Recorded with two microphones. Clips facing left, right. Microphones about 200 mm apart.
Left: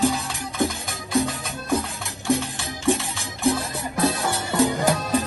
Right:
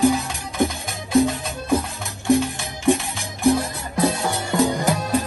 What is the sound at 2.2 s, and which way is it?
Music, 15° right (ahead or behind).